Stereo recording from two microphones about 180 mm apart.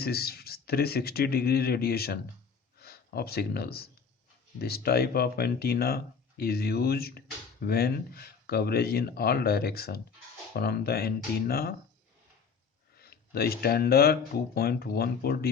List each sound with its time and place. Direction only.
0.0 s speech: 60° left (ahead or behind)
13.0 s speech: 60° left (ahead or behind)